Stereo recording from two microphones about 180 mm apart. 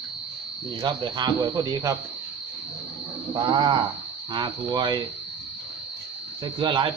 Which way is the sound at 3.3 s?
25° right (ahead or behind).